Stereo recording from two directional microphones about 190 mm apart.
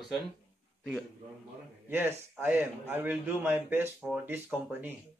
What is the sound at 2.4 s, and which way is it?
Speech, 10° right (ahead or behind).